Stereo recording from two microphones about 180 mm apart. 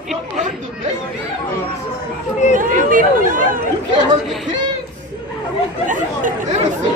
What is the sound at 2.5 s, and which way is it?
Speech, 50° right (ahead or behind).